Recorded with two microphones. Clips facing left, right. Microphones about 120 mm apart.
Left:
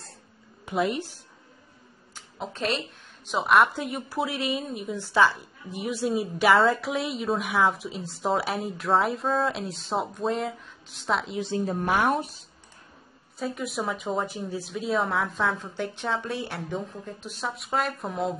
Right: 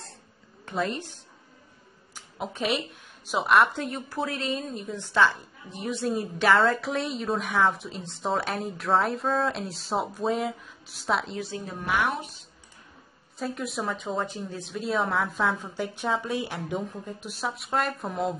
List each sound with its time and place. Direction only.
0.7 s a woman's voice: 10° left (ahead or behind)
2.3 s a woman's voice: 5° right (ahead or behind)
11.5 s a woman's voice: 40° left (ahead or behind)
13.4 s a woman's voice: centre (ahead or behind)